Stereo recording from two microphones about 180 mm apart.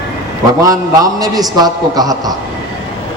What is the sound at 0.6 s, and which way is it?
A man's voice, 20° right (ahead or behind).